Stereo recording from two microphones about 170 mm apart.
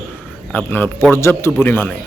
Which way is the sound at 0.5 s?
10° left (ahead or behind).